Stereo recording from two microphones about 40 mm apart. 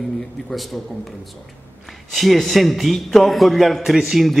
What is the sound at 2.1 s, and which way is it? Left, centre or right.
A man's voice, centre.